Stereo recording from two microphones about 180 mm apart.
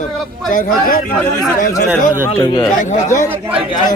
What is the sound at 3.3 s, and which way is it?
Speech, 10° right (ahead or behind).